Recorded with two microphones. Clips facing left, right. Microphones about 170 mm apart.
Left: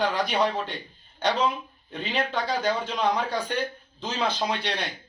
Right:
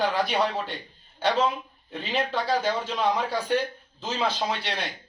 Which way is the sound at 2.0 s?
Centre (ahead or behind).